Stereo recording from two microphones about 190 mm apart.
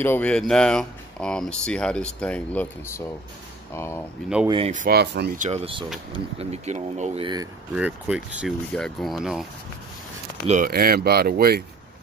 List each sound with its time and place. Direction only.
0.0 s speech: 10° left (ahead or behind)
4.5 s speech: 30° right (ahead or behind)
4.7 s speech: 55° right (ahead or behind)
5.4 s speech: 35° right (ahead or behind)
7.7 s speech: 5° right (ahead or behind)
10.4 s speech: 35° right (ahead or behind)
10.7 s speech: 55° right (ahead or behind)